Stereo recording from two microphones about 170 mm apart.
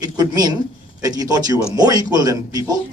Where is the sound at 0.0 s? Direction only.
25° right (ahead or behind).